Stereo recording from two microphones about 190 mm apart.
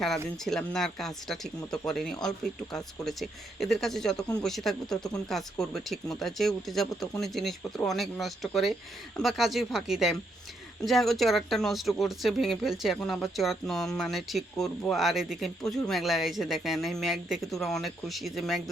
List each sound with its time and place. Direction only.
0.4 s speech: centre (ahead or behind)
4.2 s speech: 20° left (ahead or behind)
4.4 s speech: centre (ahead or behind)